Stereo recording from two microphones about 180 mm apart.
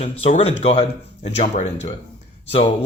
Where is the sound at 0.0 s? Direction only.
35° left (ahead or behind).